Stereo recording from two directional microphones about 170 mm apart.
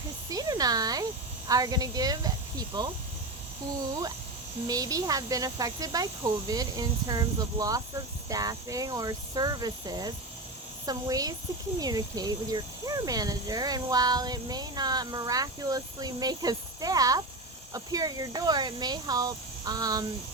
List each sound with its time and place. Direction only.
0.3 s speech: 20° right (ahead or behind)
4.6 s speech: 20° right (ahead or behind)